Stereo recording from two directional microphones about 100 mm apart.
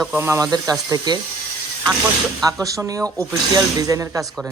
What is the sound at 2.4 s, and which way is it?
Speech, 35° right (ahead or behind).